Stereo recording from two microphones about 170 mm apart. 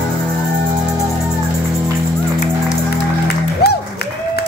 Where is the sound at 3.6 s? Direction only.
70° left (ahead or behind).